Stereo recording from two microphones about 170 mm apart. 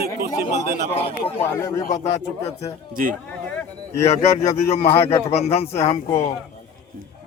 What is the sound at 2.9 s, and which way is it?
Speech, 55° right (ahead or behind).